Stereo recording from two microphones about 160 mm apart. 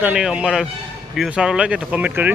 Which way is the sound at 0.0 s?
5° right (ahead or behind).